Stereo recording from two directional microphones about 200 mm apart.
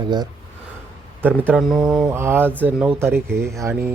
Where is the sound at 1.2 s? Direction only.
10° right (ahead or behind).